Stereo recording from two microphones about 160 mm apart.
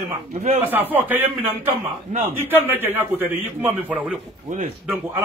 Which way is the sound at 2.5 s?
15° right (ahead or behind).